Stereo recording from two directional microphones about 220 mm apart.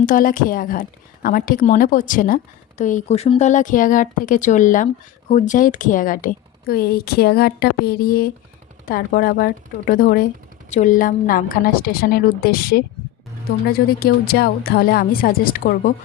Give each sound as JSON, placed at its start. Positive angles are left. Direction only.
{"t": 0.0, "sound": "a woman's voice", "side_deg": 35}